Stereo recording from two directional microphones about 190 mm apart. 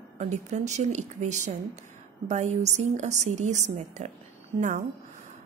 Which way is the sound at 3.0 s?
40° right (ahead or behind).